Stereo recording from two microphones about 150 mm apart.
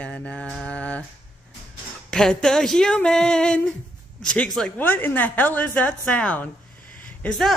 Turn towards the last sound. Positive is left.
turn(degrees=10)  # may be behind; listen again after turning